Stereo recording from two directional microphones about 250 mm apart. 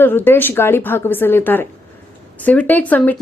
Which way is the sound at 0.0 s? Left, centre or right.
Centre.